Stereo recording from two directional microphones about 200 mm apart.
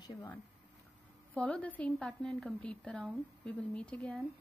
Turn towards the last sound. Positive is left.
turn(degrees=5)  # may be behind; listen again after turning